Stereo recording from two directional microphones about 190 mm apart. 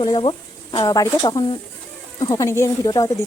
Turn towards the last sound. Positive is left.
turn(degrees=20)  # may be behind; listen again after turning